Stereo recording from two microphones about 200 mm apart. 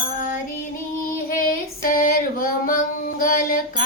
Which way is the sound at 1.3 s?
45° left (ahead or behind).